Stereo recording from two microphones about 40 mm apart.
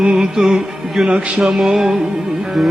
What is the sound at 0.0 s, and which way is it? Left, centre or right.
Music, centre.